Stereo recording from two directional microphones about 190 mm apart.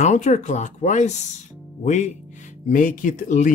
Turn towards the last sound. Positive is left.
turn(degrees=40)  # may be behind; listen again after turning